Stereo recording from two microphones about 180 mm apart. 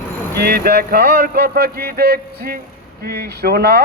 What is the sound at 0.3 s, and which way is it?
Speech, 60° right (ahead or behind).